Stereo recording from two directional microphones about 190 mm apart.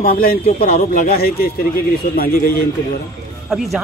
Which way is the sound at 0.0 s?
50° left (ahead or behind).